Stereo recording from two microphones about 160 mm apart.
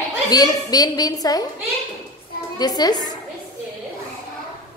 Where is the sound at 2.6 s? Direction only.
25° left (ahead or behind).